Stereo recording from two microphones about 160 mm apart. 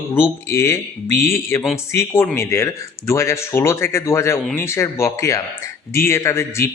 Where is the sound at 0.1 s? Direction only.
15° left (ahead or behind).